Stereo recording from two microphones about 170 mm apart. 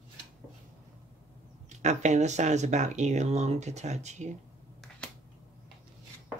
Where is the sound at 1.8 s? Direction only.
45° right (ahead or behind).